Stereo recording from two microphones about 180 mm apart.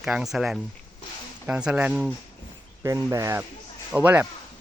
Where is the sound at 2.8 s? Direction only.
15° right (ahead or behind).